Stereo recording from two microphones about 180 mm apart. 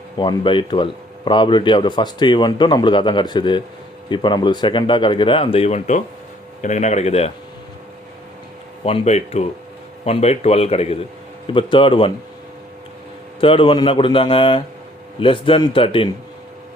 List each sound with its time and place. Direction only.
0.2 s a man's voice: 25° left (ahead or behind)
8.8 s a man's voice: 35° left (ahead or behind)
13.4 s speech: 30° left (ahead or behind)